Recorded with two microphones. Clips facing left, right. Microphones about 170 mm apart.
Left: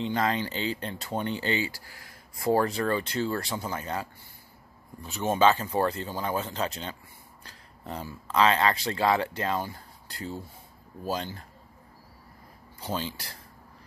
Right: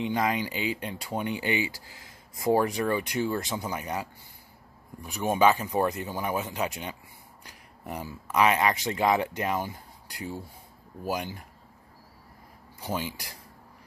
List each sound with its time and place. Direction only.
0.0 s speech: 15° right (ahead or behind)
12.8 s speech: 15° right (ahead or behind)